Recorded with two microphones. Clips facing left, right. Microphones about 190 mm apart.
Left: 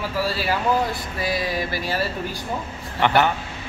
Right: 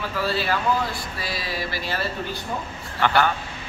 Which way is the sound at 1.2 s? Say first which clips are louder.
Left 6 dB; 15° left (ahead or behind).